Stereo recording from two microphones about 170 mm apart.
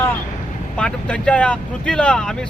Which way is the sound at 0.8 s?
5° left (ahead or behind).